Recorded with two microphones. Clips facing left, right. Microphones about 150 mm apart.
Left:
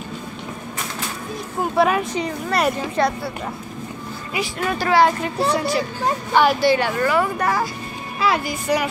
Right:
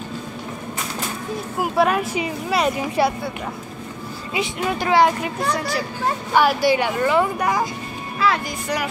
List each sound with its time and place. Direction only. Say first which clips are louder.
1.6 s speech: left 1 dB; centre (ahead or behind)
4.3 s speech: right 1 dB; 20° right (ahead or behind)
5.6 s speech: left 3 dB; centre (ahead or behind)
6.3 s speech: left 1 dB; 10° right (ahead or behind)
8.2 s speech: left 1 dB; 10° left (ahead or behind)